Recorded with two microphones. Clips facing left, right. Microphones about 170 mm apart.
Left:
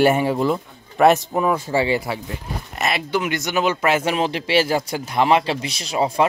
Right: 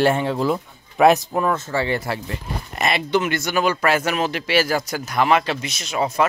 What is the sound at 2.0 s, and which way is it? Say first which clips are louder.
Speech: even; centre (ahead or behind).